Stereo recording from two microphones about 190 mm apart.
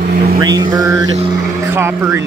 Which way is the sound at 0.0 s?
50° right (ahead or behind).